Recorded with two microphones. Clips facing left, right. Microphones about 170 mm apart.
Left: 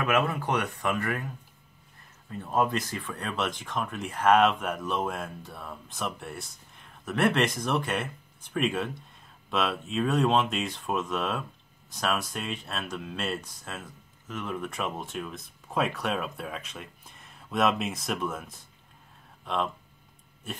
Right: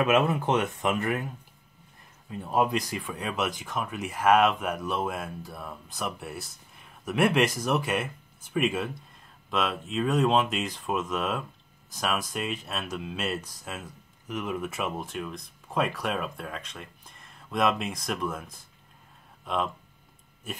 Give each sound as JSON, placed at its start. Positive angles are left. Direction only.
{"t": 0.0, "sound": "speech", "side_deg": -20}
{"t": 14.2, "sound": "speech", "side_deg": -10}